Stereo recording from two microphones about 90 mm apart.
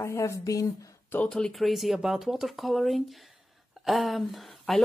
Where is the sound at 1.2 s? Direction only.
5° left (ahead or behind).